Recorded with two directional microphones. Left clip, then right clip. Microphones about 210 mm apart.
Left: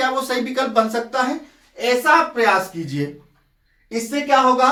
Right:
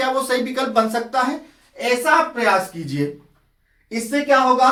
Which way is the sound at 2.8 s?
15° right (ahead or behind).